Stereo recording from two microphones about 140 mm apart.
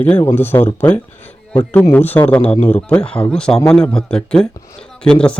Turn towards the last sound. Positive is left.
turn(degrees=10)  # may be behind; listen again after turning